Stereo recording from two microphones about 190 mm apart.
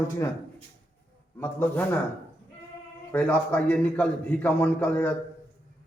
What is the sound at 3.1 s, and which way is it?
A man's voice, 10° left (ahead or behind).